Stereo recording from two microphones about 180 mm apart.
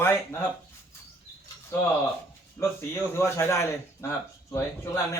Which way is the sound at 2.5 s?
15° left (ahead or behind).